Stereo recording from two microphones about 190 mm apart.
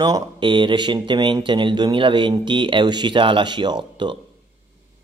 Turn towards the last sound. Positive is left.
turn(degrees=-25)  # may be behind; listen again after turning